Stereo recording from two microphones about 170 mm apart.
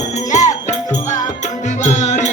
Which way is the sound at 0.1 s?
45° left (ahead or behind).